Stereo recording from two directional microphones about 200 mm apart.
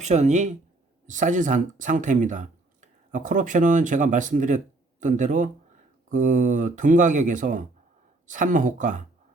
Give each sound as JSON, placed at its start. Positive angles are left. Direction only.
{"t": 0.0, "sound": "speech", "side_deg": -35}